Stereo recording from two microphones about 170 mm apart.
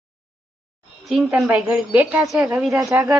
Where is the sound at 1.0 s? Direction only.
5° right (ahead or behind).